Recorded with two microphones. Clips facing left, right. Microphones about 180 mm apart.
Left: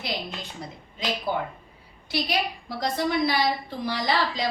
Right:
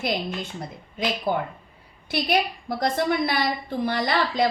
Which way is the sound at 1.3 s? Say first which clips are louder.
Right 3 dB; 50° right (ahead or behind).